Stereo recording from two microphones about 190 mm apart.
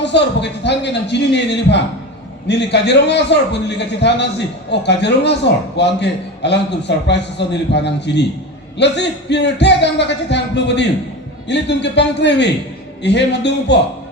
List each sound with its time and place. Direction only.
0.0 s a man's voice: 65° left (ahead or behind)